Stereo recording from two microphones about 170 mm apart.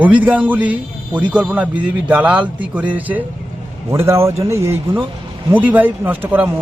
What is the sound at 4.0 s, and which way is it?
A man's voice, 15° right (ahead or behind).